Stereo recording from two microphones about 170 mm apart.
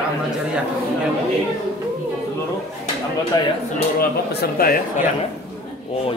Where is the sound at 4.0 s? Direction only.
60° left (ahead or behind).